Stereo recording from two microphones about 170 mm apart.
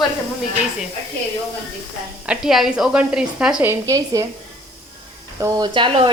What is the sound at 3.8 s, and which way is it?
Speech, 20° right (ahead or behind).